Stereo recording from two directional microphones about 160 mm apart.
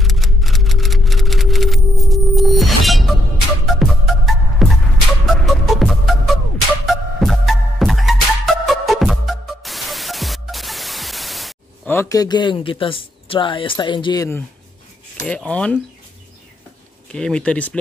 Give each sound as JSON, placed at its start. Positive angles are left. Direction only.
{"t": 0.0, "sound": "music", "side_deg": 0}
{"t": 11.9, "sound": "speech", "side_deg": 20}
{"t": 15.2, "sound": "speech", "side_deg": 10}
{"t": 17.1, "sound": "speech", "side_deg": 5}